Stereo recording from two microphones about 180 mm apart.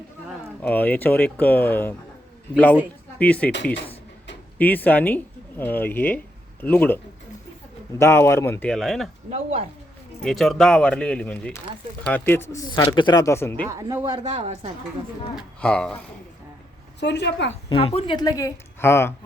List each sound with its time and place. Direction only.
0.6 s speech: 10° left (ahead or behind)
3.2 s speech: 10° left (ahead or behind)
4.5 s speech: 10° left (ahead or behind)
9.3 s speech: 35° right (ahead or behind)
10.2 s speech: centre (ahead or behind)
13.7 s speech: 15° right (ahead or behind)
14.2 s speech: 40° right (ahead or behind)
15.4 s speech: 5° left (ahead or behind)
17.0 s a woman's voice: 70° left (ahead or behind)
17.7 s speech: 30° left (ahead or behind); by 19.1 s 15° left (ahead or behind)